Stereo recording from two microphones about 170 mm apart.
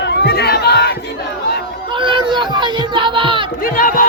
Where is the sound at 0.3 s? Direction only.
70° left (ahead or behind).